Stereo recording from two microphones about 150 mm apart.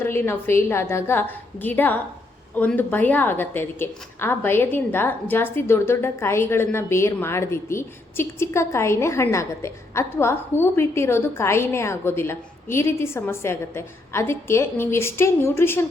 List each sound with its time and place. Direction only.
0.0 s a woman's voice: 15° left (ahead or behind)